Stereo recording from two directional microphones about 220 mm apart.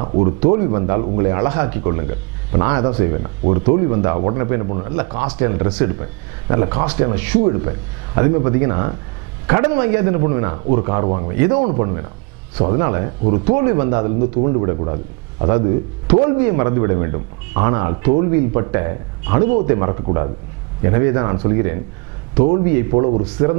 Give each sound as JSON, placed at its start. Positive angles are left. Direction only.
{"t": 0.0, "sound": "speech", "side_deg": -30}
{"t": 4.9, "sound": "speech", "side_deg": -15}
{"t": 11.3, "sound": "speech", "side_deg": -10}
{"t": 11.6, "sound": "speech", "side_deg": -25}